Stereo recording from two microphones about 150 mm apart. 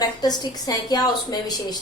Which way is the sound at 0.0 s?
25° left (ahead or behind).